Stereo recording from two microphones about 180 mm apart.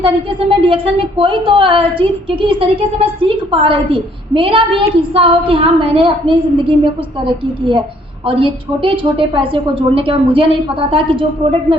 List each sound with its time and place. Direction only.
0.0 s speech: 30° right (ahead or behind)
8.3 s speech: 30° right (ahead or behind)